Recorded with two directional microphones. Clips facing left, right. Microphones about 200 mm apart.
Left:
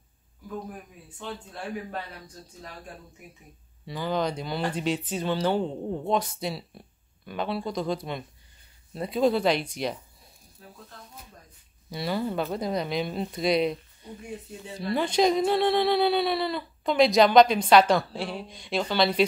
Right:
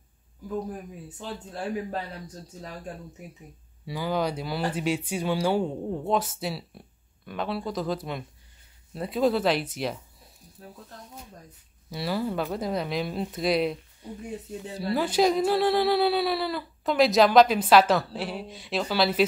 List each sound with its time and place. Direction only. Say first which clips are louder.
1.2 s a man's voice: right 2 dB; 35° right (ahead or behind)
3.8 s speech: even; 10° right (ahead or behind)
11.9 s speech: even; centre (ahead or behind)